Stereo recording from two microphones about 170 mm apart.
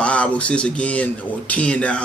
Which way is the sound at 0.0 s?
5° left (ahead or behind).